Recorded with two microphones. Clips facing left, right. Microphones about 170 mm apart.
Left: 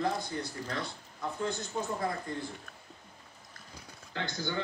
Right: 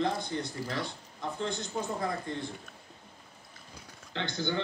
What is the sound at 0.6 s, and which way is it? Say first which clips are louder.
Speech: right 2 dB; 5° right (ahead or behind).